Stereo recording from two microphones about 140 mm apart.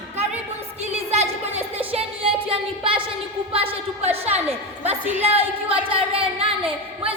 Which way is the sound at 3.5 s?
40° right (ahead or behind).